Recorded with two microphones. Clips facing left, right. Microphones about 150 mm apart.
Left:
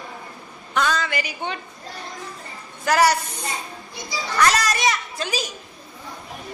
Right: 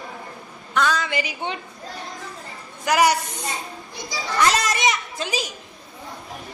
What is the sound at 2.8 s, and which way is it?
Speech, 15° right (ahead or behind).